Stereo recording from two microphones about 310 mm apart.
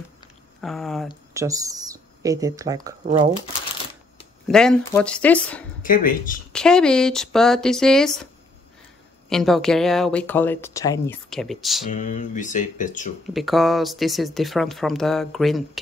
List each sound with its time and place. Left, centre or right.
0.6 s speech: centre
4.5 s speech: centre
5.8 s speech: left
6.5 s speech: centre
9.3 s speech: centre
11.9 s speech: left
13.3 s speech: centre